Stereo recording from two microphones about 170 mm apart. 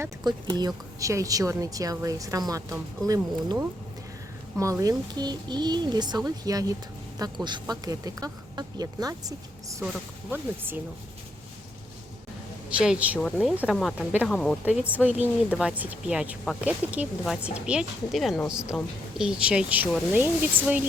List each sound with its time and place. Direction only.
0.0 s a woman's voice: 25° right (ahead or behind)
4.5 s a woman's voice: 20° right (ahead or behind)
9.8 s speech: 10° right (ahead or behind)
12.7 s speech: 5° right (ahead or behind)
13.1 s speech: 5° left (ahead or behind)
14.1 s speech: 10° right (ahead or behind)